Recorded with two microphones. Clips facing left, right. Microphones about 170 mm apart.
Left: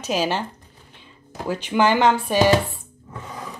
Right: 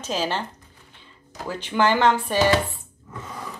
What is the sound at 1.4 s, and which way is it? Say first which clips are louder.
Speech: left 2 dB; 15° left (ahead or behind).